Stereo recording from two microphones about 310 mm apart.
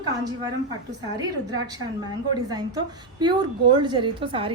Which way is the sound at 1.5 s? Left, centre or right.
Centre.